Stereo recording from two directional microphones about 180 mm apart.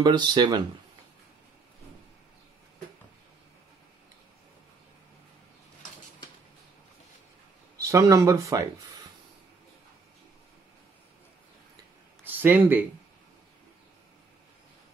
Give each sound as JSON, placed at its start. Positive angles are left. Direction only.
{"t": 0.0, "sound": "speech", "side_deg": -25}
{"t": 7.8, "sound": "speech", "side_deg": -20}
{"t": 12.3, "sound": "speech", "side_deg": -10}